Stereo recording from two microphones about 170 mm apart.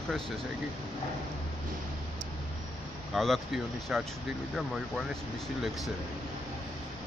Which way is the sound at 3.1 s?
Centre (ahead or behind).